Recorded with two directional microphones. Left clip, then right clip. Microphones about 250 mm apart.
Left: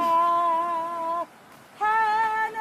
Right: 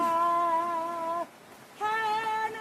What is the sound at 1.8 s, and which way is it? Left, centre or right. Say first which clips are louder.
Female singing: left 6 dB; left.